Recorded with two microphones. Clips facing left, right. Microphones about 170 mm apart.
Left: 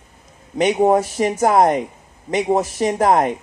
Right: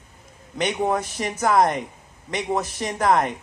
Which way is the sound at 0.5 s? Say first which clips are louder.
Left 8 dB; 35° left (ahead or behind).